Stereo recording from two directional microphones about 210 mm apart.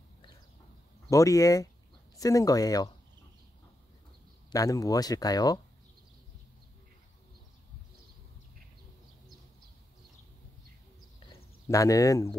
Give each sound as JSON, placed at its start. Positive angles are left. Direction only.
{"t": 1.1, "sound": "speech", "side_deg": 15}
{"t": 4.5, "sound": "speech", "side_deg": 15}
{"t": 11.6, "sound": "speech", "side_deg": 15}